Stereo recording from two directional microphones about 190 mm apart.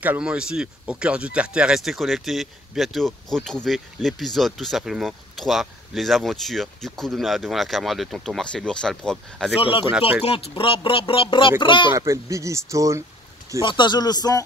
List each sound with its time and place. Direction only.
0.0 s speech: 5° right (ahead or behind)
9.6 s speech: 30° left (ahead or behind)
9.8 s speech: 5° right (ahead or behind)
10.2 s speech: 30° left (ahead or behind)
11.9 s speech: 15° right (ahead or behind)
13.6 s speech: 25° left (ahead or behind)